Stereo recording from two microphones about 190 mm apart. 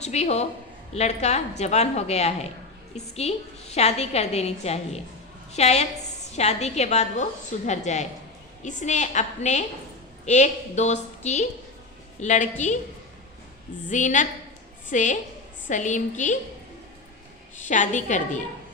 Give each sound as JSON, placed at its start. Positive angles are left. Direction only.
{"t": 0.0, "sound": "a woman's voice", "side_deg": 35}
{"t": 13.8, "sound": "a woman's voice", "side_deg": 40}
{"t": 17.6, "sound": "a woman's voice", "side_deg": 40}